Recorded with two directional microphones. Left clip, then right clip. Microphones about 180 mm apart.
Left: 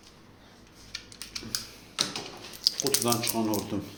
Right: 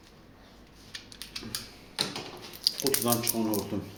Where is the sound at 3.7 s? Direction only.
25° left (ahead or behind).